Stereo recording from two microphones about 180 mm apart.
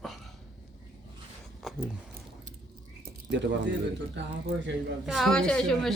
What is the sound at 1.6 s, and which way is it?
Speech, centre (ahead or behind).